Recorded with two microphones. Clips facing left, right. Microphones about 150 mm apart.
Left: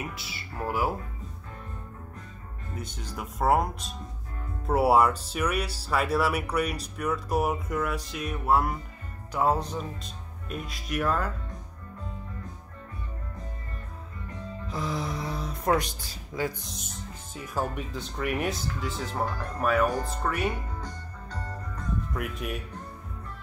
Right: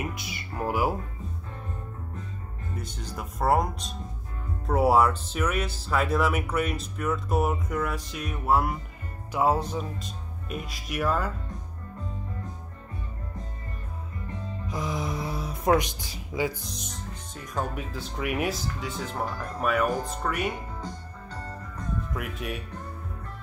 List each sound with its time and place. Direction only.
0.1 s speech: 15° right (ahead or behind)
2.7 s speech: centre (ahead or behind)
14.7 s music: 15° right (ahead or behind)
15.2 s speech: 10° right (ahead or behind)
16.6 s speech: centre (ahead or behind)
19.2 s speech: 10° right (ahead or behind)
22.1 s speech: centre (ahead or behind)